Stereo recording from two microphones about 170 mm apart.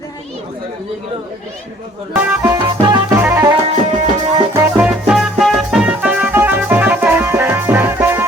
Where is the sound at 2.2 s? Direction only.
10° right (ahead or behind).